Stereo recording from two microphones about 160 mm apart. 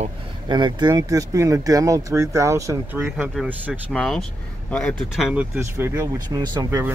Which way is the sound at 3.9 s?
5° left (ahead or behind).